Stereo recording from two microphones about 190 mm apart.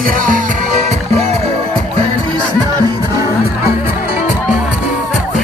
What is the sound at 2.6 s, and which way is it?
Music, 20° right (ahead or behind).